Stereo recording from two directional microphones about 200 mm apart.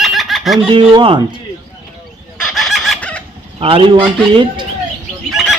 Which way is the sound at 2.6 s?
Centre (ahead or behind).